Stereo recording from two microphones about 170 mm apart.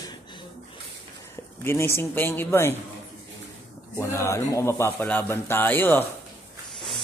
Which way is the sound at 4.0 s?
15° left (ahead or behind).